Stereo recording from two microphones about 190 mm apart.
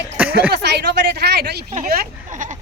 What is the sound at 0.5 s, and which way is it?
Speech, 60° right (ahead or behind).